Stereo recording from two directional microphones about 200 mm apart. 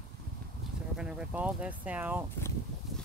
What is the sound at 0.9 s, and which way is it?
Speech, 5° right (ahead or behind).